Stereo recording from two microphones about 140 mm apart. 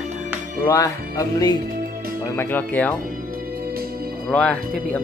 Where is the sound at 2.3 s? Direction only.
15° left (ahead or behind).